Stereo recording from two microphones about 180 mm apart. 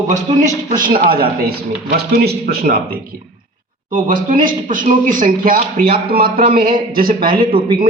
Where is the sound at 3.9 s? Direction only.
50° right (ahead or behind).